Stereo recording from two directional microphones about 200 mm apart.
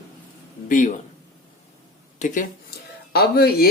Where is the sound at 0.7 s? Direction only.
40° left (ahead or behind).